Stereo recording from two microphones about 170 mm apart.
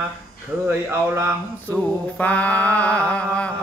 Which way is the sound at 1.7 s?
10° left (ahead or behind).